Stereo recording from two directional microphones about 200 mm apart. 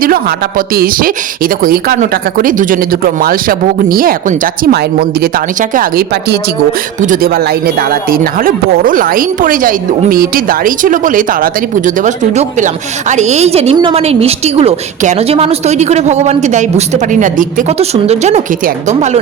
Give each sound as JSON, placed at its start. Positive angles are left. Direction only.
{"t": 0.0, "sound": "a woman's voice", "side_deg": -45}